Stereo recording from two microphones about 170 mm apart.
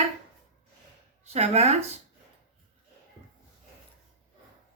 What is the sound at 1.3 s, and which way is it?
Speech, 40° right (ahead or behind).